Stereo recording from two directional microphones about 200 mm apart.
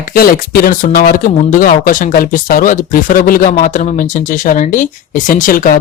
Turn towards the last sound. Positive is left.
turn(degrees=45)  # may be behind; listen again after turning